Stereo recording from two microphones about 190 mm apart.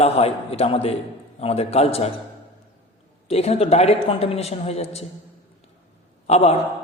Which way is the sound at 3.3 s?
35° left (ahead or behind).